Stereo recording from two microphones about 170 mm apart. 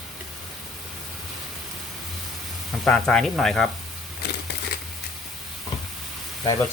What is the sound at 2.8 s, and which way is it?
Speech, 5° left (ahead or behind).